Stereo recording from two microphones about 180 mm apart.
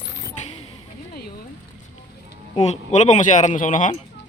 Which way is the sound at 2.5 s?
40° left (ahead or behind).